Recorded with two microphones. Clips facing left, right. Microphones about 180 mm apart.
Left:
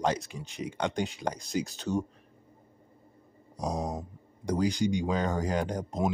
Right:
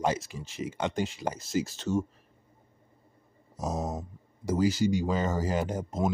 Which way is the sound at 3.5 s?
5° right (ahead or behind).